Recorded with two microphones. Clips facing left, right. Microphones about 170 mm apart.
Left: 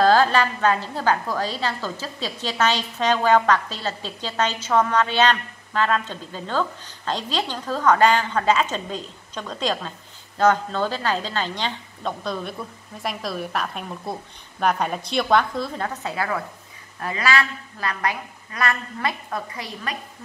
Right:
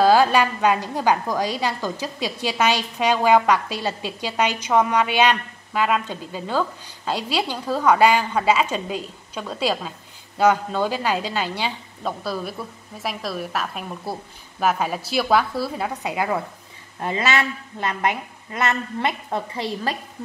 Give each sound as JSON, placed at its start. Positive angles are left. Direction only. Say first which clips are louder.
{"t": 0.0, "sound": "a woman's voice", "louder": "right 1 dB", "side_deg": -10}